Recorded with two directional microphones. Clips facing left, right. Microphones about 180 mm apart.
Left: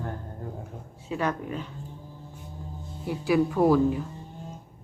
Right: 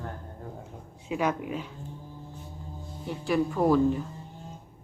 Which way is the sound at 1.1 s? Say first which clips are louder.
Right 1 dB; 10° right (ahead or behind).